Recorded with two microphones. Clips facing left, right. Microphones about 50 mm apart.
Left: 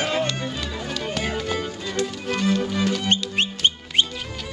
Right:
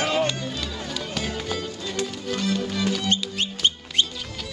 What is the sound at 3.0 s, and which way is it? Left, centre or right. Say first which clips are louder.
Music: left 3 dB; left.